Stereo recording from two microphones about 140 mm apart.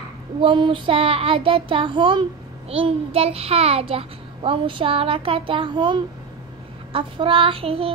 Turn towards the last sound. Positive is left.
turn(degrees=-45)  # may be behind; listen again after turning